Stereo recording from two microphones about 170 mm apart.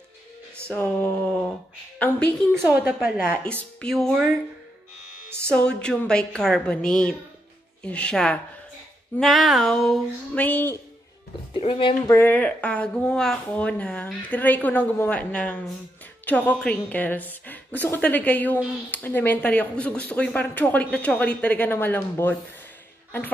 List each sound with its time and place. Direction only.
0.7 s a woman's voice: 10° left (ahead or behind)
2.5 s a woman's voice: 10° right (ahead or behind)
3.8 s a woman's voice: centre (ahead or behind)
5.5 s a woman's voice: 5° left (ahead or behind)
11.5 s speech: 35° left (ahead or behind)
12.1 s speech: 10° left (ahead or behind)